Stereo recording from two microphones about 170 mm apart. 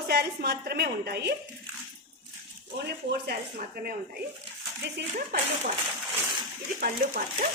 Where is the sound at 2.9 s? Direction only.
75° right (ahead or behind); by 4.0 s 60° right (ahead or behind).